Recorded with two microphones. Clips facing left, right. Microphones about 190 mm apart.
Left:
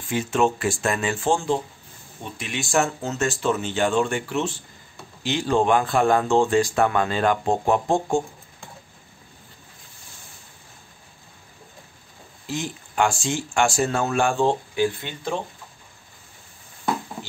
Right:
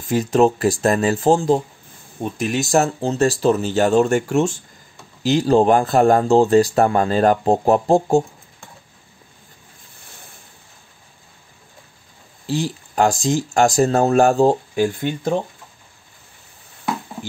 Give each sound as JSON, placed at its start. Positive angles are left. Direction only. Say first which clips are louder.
{"t": 0.0, "sound": "speech", "louder": "right 6 dB", "side_deg": -40}
{"t": 12.4, "sound": "speech", "louder": "right 7 dB", "side_deg": -35}